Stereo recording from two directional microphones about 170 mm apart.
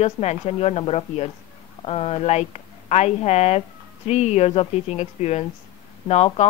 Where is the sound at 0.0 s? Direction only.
40° left (ahead or behind).